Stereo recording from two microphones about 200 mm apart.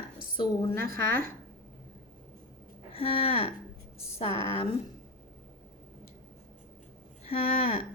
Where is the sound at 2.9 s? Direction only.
30° left (ahead or behind).